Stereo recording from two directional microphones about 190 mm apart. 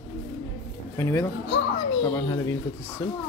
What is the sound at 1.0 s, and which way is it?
Speech, 10° left (ahead or behind).